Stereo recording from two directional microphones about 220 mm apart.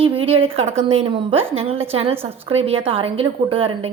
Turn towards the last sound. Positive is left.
turn(degrees=-25)  # may be behind; listen again after turning